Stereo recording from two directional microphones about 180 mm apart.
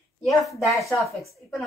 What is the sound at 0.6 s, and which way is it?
A woman's voice, centre (ahead or behind).